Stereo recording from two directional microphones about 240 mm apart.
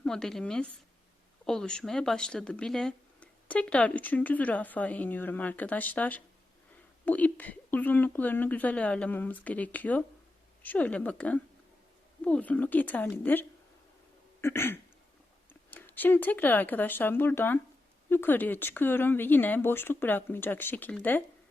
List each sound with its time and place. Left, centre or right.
0.0 s speech: centre
14.4 s speech: centre